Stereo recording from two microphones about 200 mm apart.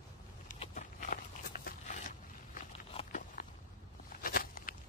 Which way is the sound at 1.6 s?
40° left (ahead or behind).